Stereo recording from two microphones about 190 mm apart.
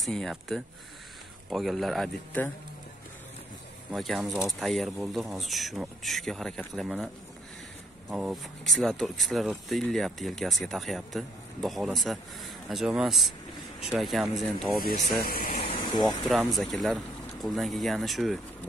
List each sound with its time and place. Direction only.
0.0 s speech: centre (ahead or behind)
3.9 s speech: centre (ahead or behind)
8.1 s speech: 5° right (ahead or behind)
14.8 s speech: 50° left (ahead or behind)
15.5 s air conditioning: 30° left (ahead or behind)
16.3 s speech: centre (ahead or behind)